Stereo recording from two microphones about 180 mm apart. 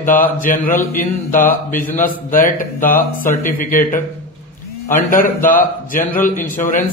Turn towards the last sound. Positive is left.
turn(degrees=45)  # may be behind; listen again after turning